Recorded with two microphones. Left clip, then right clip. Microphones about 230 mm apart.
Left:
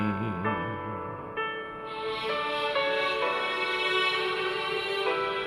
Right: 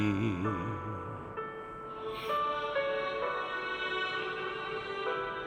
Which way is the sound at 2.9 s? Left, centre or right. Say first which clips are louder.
Left 6 dB; left.